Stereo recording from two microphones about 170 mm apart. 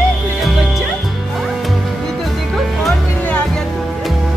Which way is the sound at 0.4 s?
Centre (ahead or behind).